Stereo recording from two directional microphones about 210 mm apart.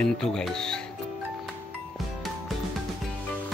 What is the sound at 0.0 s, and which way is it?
Speech, 5° left (ahead or behind).